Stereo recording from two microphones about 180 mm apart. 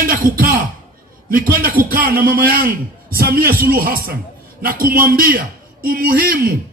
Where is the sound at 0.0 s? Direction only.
50° right (ahead or behind).